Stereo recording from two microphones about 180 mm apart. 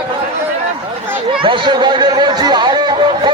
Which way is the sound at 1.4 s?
25° right (ahead or behind).